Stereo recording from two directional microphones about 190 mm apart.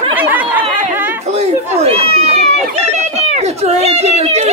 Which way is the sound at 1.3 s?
30° right (ahead or behind).